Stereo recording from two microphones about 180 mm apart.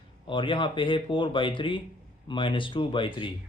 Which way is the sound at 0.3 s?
30° left (ahead or behind).